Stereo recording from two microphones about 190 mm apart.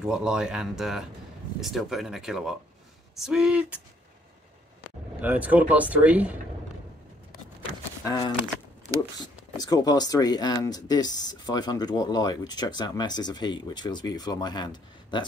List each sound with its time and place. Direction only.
0.0 s speech: 5° right (ahead or behind)
5.2 s speech: 10° right (ahead or behind)
8.0 s speech: 20° left (ahead or behind)
9.6 s speech: 20° left (ahead or behind)